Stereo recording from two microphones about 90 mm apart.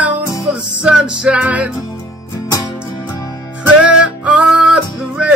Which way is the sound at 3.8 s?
10° right (ahead or behind).